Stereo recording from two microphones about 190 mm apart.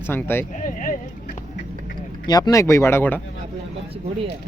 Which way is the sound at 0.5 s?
45° left (ahead or behind).